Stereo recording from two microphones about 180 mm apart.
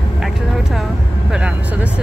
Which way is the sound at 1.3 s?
5° right (ahead or behind).